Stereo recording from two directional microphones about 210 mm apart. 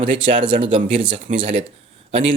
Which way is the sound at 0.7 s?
25° right (ahead or behind).